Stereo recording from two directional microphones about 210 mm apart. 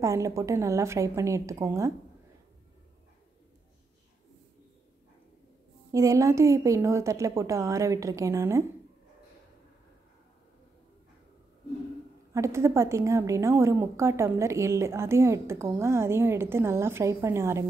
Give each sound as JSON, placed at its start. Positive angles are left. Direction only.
{"t": 0.0, "sound": "a woman's voice", "side_deg": -15}
{"t": 5.9, "sound": "a woman's voice", "side_deg": -15}
{"t": 12.4, "sound": "a woman's voice", "side_deg": -15}